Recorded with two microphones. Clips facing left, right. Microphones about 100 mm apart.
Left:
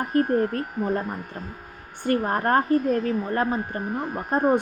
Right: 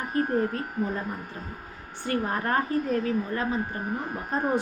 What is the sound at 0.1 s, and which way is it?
Speech, 55° left (ahead or behind).